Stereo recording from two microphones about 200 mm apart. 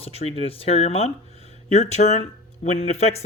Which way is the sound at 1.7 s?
35° left (ahead or behind).